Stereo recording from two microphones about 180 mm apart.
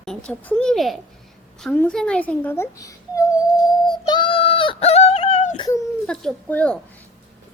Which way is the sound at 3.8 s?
25° left (ahead or behind).